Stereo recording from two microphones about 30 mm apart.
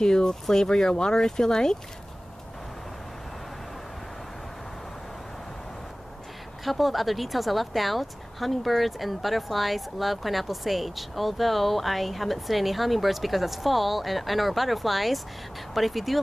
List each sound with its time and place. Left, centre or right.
0.0 s speech: left
6.6 s speech: centre